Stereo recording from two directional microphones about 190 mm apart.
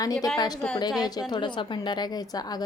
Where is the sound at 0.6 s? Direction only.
5° left (ahead or behind).